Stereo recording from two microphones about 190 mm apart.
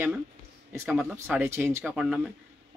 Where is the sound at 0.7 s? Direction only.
10° right (ahead or behind).